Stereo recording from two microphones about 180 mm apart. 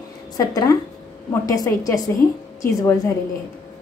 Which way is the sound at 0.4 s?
20° left (ahead or behind).